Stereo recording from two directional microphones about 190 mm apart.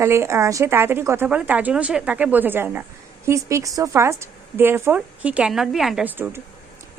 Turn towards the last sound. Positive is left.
turn(degrees=-10)  # may be behind; listen again after turning